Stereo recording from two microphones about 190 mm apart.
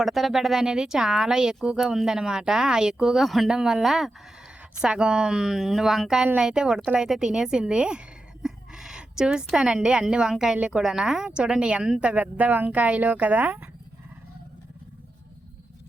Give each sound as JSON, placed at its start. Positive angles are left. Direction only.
{"t": 0.0, "sound": "a woman's voice", "side_deg": 0}